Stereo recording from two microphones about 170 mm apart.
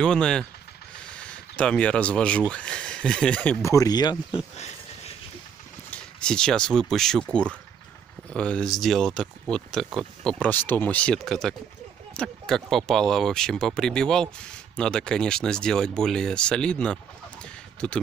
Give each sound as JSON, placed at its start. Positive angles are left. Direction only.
{"t": 0.0, "sound": "speech", "side_deg": 5}
{"t": 3.7, "sound": "speech", "side_deg": 20}
{"t": 4.6, "sound": "a sound", "side_deg": 40}
{"t": 5.9, "sound": "speech", "side_deg": 5}